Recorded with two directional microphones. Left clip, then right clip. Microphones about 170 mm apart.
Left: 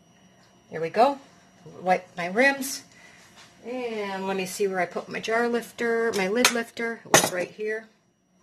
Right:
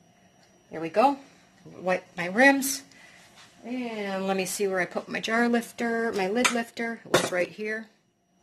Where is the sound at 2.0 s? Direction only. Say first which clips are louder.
Even; 40° right (ahead or behind).